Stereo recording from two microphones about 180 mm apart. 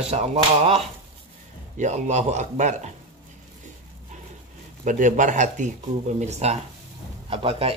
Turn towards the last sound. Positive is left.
turn(degrees=-30)  # may be behind; listen again after turning